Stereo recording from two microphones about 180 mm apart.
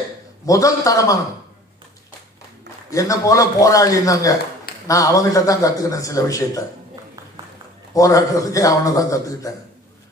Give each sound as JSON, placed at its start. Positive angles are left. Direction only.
{"t": 0.5, "sound": "speech", "side_deg": 20}
{"t": 2.9, "sound": "speech", "side_deg": 20}
{"t": 7.9, "sound": "speech", "side_deg": 20}